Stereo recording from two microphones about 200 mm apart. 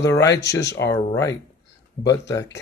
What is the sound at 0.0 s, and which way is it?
Speech, 15° left (ahead or behind).